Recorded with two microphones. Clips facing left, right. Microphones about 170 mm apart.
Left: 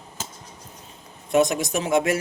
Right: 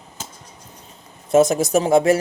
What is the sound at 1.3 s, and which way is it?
Speech, 40° right (ahead or behind).